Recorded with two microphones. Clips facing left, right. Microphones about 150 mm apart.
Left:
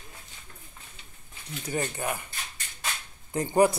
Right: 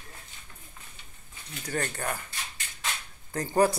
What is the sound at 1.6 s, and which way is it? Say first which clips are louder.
Speech: left 1 dB; 15° left (ahead or behind).